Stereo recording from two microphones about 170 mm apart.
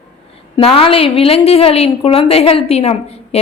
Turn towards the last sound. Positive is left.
turn(degrees=35)  # may be behind; listen again after turning